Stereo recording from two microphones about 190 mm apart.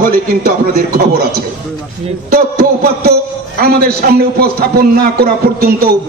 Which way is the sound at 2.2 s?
55° right (ahead or behind).